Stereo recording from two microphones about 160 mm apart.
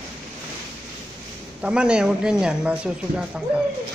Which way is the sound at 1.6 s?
5° right (ahead or behind).